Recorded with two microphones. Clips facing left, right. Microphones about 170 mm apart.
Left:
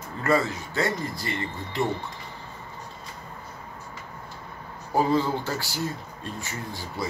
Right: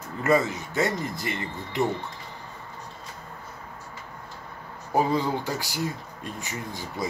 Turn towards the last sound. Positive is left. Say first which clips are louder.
# even
turn(degrees=-20)  # may be behind; listen again after turning